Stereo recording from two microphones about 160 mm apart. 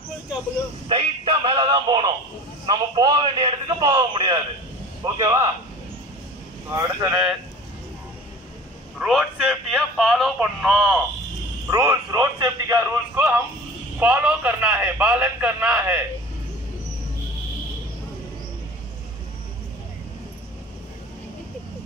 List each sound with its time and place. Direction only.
0.8 s a man's voice: 30° right (ahead or behind)
6.7 s a man's voice: 20° right (ahead or behind)
8.9 s speech: centre (ahead or behind)
11.7 s a man's voice: 20° right (ahead or behind)